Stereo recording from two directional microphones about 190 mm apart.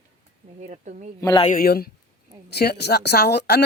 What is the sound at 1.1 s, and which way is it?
Speech, 15° left (ahead or behind).